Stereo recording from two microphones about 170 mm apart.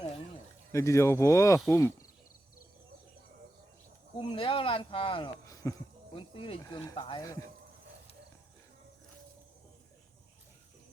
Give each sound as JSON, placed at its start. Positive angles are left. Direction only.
{"t": 0.7, "sound": "speech", "side_deg": 15}
{"t": 4.2, "sound": "speech", "side_deg": 30}
{"t": 5.5, "sound": "a sound", "side_deg": 20}
{"t": 6.1, "sound": "speech", "side_deg": 30}